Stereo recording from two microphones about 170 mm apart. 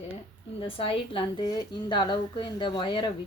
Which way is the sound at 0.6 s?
30° left (ahead or behind).